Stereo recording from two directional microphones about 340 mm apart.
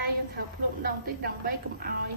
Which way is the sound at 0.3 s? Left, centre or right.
Right.